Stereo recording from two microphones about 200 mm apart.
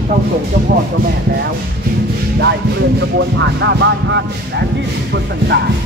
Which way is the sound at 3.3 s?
65° right (ahead or behind).